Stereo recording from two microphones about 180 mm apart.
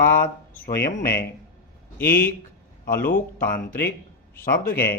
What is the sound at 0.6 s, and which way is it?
Speech, 60° left (ahead or behind).